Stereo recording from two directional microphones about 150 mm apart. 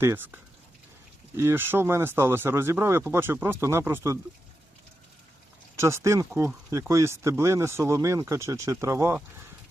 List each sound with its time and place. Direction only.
0.0 s speech: 15° right (ahead or behind)
1.4 s speech: 15° right (ahead or behind)
5.7 s speech: 20° right (ahead or behind)